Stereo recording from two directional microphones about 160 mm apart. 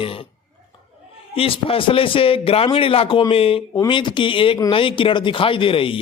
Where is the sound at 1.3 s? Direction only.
35° left (ahead or behind).